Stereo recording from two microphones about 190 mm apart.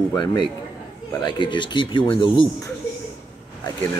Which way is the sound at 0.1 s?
20° left (ahead or behind).